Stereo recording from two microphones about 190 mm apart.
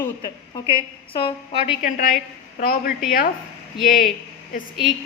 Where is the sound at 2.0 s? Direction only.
45° left (ahead or behind).